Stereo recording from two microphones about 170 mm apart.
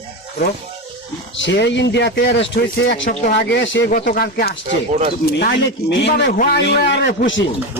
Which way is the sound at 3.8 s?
55° left (ahead or behind).